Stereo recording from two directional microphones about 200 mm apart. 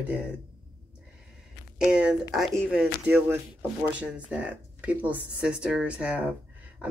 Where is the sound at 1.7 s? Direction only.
5° right (ahead or behind).